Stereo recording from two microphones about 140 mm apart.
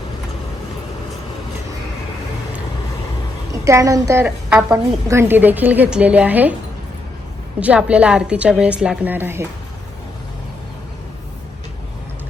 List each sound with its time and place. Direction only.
3.5 s a woman's voice: 20° right (ahead or behind)
7.6 s a woman's voice: 10° right (ahead or behind)